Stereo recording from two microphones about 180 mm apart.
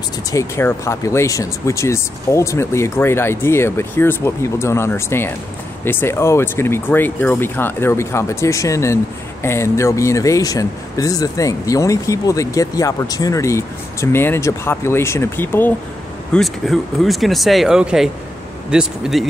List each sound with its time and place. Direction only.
0.3 s speech: 15° left (ahead or behind); by 19.2 s 5° right (ahead or behind)